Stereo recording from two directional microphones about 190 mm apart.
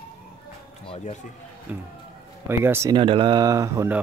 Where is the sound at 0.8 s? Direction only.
30° left (ahead or behind).